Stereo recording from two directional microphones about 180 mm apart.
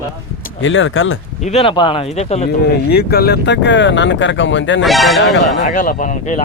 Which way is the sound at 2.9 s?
60° left (ahead or behind).